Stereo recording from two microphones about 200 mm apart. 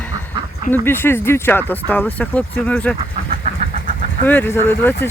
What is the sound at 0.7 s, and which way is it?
Speech, 10° left (ahead or behind).